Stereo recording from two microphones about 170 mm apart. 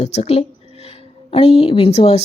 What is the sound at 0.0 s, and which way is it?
A woman's voice, 40° left (ahead or behind).